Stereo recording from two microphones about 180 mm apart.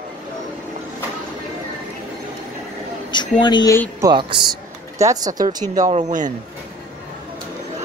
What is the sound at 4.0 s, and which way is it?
Speech, 25° right (ahead or behind).